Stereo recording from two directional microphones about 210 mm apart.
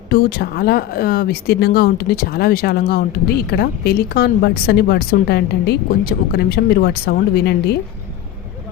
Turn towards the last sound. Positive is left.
turn(degrees=50)  # may be behind; listen again after turning